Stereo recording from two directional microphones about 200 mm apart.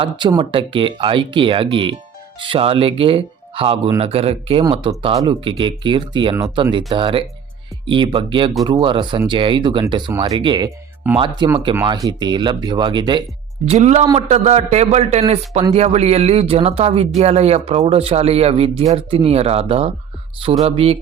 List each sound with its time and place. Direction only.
0.0 s speech: 25° right (ahead or behind)
13.7 s speech: 35° right (ahead or behind)